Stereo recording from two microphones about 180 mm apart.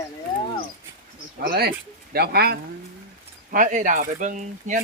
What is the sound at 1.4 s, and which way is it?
Speech, 55° right (ahead or behind).